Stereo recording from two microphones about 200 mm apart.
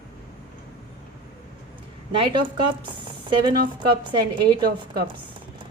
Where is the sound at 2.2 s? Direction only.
25° right (ahead or behind).